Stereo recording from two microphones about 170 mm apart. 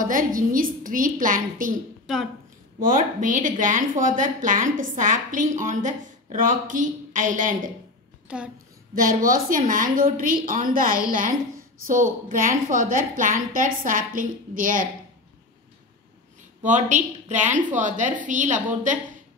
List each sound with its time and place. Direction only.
0.0 s speech: 55° right (ahead or behind)
2.8 s speech: 55° right (ahead or behind)
8.3 s a woman's voice: 5° right (ahead or behind)
8.9 s a woman's voice: 55° right (ahead or behind)
16.6 s speech: 45° right (ahead or behind)